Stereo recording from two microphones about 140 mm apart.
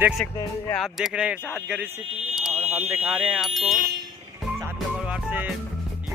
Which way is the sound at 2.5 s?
50° right (ahead or behind).